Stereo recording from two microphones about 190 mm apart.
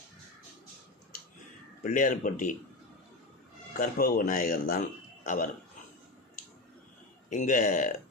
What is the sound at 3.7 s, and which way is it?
Speech, 50° left (ahead or behind).